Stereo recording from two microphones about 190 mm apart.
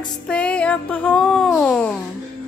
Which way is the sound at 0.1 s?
5° left (ahead or behind).